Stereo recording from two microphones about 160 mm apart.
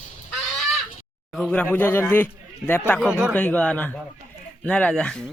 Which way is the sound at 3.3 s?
10° left (ahead or behind).